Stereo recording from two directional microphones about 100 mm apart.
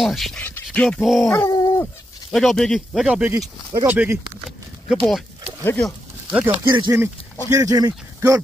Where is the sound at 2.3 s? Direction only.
Centre (ahead or behind).